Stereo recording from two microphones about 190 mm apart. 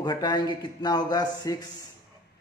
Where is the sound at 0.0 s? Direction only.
20° left (ahead or behind).